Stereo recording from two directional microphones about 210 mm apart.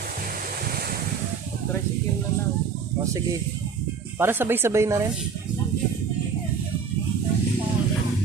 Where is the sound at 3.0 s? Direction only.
15° right (ahead or behind).